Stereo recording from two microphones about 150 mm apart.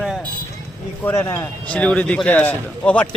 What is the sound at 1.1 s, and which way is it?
Speech, 20° left (ahead or behind).